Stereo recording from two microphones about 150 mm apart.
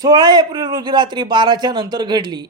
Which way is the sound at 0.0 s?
30° right (ahead or behind).